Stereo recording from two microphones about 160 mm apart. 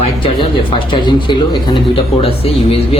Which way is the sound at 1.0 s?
30° left (ahead or behind).